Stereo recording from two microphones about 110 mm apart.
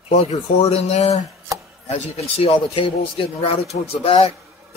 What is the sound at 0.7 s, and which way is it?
Speech, 75° left (ahead or behind).